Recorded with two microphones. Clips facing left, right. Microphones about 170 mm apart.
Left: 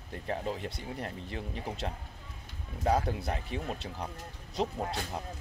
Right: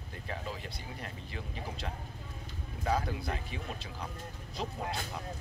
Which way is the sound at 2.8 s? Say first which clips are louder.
Left 4 dB; 40° left (ahead or behind).